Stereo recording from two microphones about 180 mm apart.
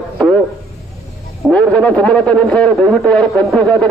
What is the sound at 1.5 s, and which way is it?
A man's voice, 5° left (ahead or behind).